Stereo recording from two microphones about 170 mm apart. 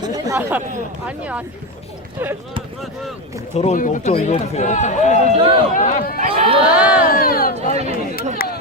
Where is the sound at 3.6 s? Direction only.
45° left (ahead or behind).